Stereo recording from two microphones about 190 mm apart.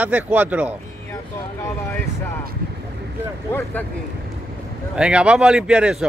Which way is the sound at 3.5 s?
10° left (ahead or behind).